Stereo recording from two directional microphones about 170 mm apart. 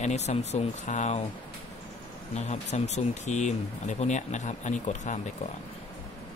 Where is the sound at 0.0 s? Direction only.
40° left (ahead or behind).